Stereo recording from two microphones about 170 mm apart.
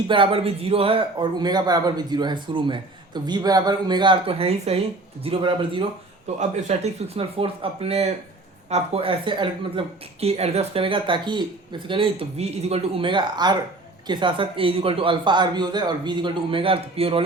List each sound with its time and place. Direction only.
0.1 s speech: 30° right (ahead or behind)
6.6 s speech: 40° right (ahead or behind)